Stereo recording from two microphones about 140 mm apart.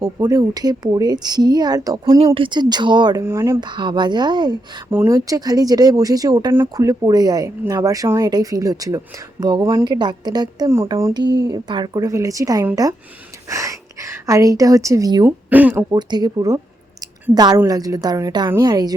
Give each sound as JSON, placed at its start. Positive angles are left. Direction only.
{"t": 0.0, "sound": "speech", "side_deg": -25}
{"t": 2.1, "sound": "speech", "side_deg": -40}
{"t": 3.7, "sound": "speech", "side_deg": -35}
{"t": 4.9, "sound": "speech", "side_deg": -20}
{"t": 15.4, "sound": "speech", "side_deg": -10}
{"t": 15.8, "sound": "speech", "side_deg": -30}